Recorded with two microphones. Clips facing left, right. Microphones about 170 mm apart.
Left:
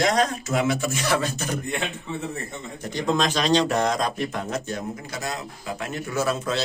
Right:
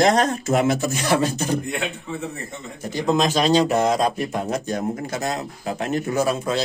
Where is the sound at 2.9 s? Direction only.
10° right (ahead or behind).